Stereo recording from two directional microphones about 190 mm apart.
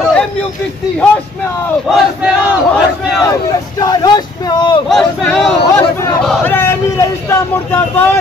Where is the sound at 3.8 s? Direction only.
20° left (ahead or behind).